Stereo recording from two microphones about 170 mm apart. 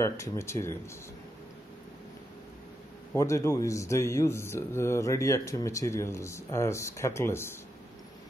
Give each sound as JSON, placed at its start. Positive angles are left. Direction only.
{"t": 0.0, "sound": "speech", "side_deg": 15}
{"t": 3.2, "sound": "speech", "side_deg": 15}